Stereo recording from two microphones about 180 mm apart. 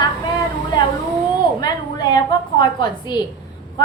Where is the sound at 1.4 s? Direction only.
25° left (ahead or behind).